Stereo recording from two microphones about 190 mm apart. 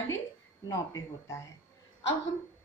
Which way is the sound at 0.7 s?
15° left (ahead or behind).